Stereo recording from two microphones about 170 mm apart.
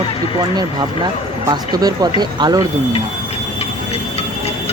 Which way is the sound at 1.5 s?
25° right (ahead or behind).